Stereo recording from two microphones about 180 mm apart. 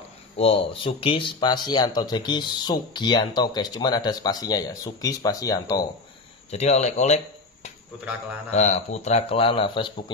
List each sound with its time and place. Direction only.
0.4 s speech: 30° left (ahead or behind)
6.5 s speech: 35° left (ahead or behind)
8.5 s speech: 40° left (ahead or behind)